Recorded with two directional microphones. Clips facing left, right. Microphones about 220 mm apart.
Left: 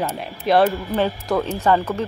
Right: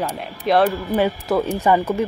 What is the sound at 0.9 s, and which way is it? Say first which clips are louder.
Speech: right 2 dB; 15° right (ahead or behind).